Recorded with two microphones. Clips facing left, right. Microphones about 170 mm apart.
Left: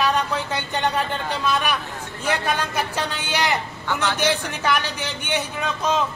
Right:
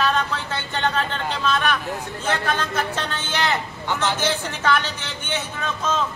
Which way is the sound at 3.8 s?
15° right (ahead or behind).